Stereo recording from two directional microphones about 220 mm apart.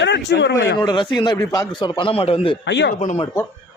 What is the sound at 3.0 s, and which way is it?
Speech, 30° left (ahead or behind).